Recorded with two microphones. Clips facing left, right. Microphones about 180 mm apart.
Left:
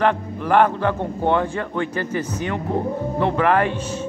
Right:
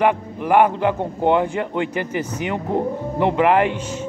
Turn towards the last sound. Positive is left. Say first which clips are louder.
# right 2 dB
turn(degrees=-15)  # may be behind; listen again after turning